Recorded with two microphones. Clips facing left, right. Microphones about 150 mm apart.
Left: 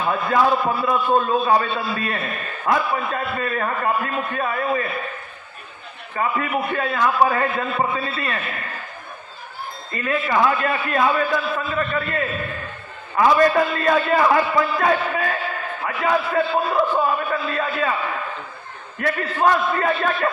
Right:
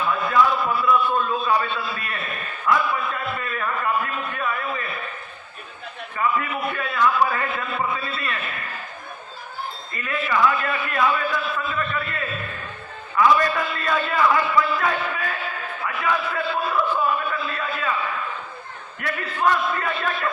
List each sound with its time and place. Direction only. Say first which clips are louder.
0.0 s a man's voice: left 1 dB; 40° left (ahead or behind)
6.1 s a man's voice: left 2 dB; 40° left (ahead or behind)
10.0 s a man's voice: left 2 dB; 40° left (ahead or behind)
19.0 s a man's voice: left 3 dB; 45° left (ahead or behind)